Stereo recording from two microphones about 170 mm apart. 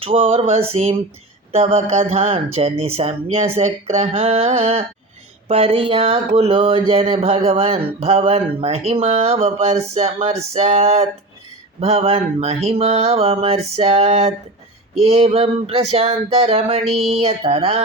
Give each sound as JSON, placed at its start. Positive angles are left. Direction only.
{"t": 0.0, "sound": "speech", "side_deg": -35}